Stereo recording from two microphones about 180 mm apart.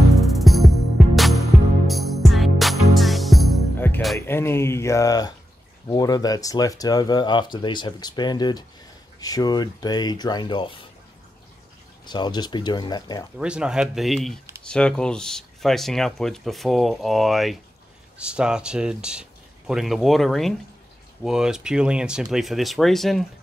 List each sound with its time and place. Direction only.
0.2 s music: centre (ahead or behind)
3.7 s music: 10° left (ahead or behind)
4.3 s speech: 15° left (ahead or behind)
12.1 s speech: 25° left (ahead or behind)
13.4 s speech: 5° right (ahead or behind)